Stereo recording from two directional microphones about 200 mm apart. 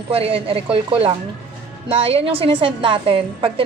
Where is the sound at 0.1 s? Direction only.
30° right (ahead or behind).